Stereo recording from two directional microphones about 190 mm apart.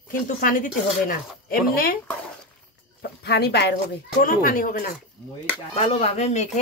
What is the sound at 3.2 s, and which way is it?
Speech, 60° left (ahead or behind).